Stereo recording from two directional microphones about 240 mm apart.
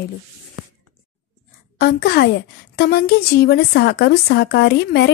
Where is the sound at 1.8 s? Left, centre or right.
Left.